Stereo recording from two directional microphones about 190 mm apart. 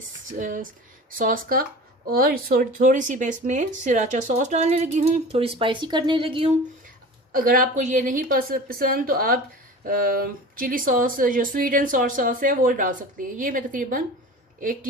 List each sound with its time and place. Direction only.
0.3 s speech: 45° right (ahead or behind); by 6.6 s 30° right (ahead or behind)
7.3 s speech: 45° right (ahead or behind)